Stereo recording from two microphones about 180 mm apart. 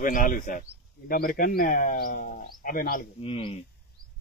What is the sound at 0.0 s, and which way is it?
Speech, 50° left (ahead or behind).